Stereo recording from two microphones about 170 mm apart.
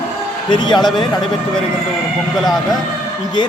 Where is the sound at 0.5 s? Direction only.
25° left (ahead or behind).